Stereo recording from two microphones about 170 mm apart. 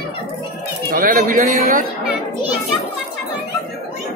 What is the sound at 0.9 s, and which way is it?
Speech, 50° right (ahead or behind).